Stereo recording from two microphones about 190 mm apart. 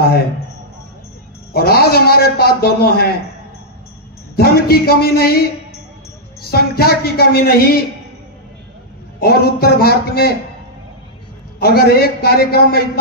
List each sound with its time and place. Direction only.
1.5 s a man's voice: 55° left (ahead or behind)
4.4 s a man's voice: 55° left (ahead or behind)
9.2 s a man's voice: 55° left (ahead or behind)
11.6 s a man's voice: 55° left (ahead or behind)